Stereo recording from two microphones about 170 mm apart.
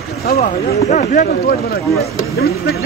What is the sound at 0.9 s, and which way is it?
Speech, 45° left (ahead or behind).